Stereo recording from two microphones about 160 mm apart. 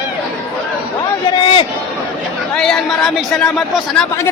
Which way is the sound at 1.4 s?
30° left (ahead or behind).